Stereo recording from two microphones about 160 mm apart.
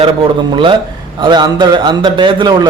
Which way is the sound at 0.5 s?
30° right (ahead or behind).